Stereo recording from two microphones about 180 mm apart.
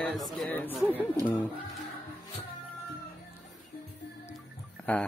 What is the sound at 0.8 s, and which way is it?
Speech, 10° right (ahead or behind).